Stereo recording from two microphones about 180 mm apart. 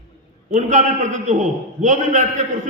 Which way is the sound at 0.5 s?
45° right (ahead or behind).